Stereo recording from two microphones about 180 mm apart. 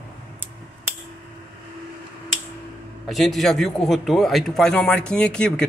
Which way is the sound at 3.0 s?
Centre (ahead or behind).